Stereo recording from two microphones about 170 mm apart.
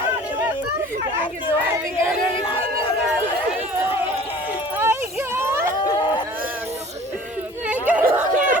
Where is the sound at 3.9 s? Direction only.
35° left (ahead or behind).